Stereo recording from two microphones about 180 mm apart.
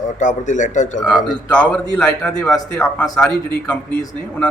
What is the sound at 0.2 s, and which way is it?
Speech, 45° left (ahead or behind).